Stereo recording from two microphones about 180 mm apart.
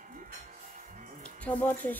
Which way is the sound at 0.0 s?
45° right (ahead or behind).